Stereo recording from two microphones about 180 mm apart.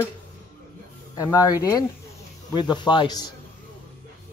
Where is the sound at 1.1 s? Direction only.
20° left (ahead or behind).